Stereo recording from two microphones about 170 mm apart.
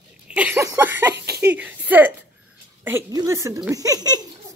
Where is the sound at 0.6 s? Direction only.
15° right (ahead or behind).